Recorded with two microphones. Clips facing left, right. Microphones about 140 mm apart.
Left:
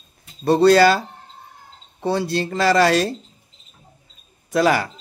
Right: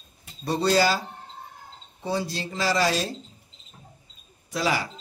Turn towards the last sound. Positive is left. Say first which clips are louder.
# left 8 dB
turn(degrees=55)  # may be behind; listen again after turning